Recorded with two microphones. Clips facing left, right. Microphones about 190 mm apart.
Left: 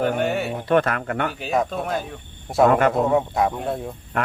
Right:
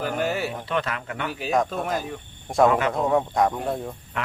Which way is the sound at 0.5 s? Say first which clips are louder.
Left 8 dB; 50° left (ahead or behind).